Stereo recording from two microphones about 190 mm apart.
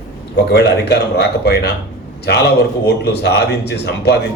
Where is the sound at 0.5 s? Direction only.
60° left (ahead or behind).